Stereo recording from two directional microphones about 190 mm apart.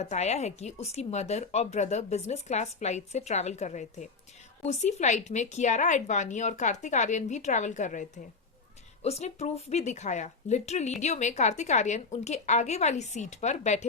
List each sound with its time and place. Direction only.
0.0 s speech: 35° left (ahead or behind)